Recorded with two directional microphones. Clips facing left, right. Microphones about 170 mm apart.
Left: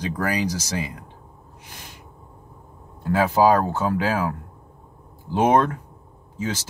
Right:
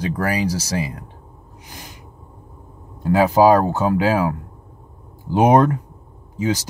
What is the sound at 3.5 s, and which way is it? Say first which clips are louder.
Speech: right 4 dB; 15° right (ahead or behind).